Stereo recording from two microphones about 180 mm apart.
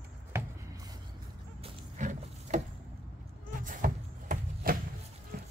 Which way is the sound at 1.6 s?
40° right (ahead or behind).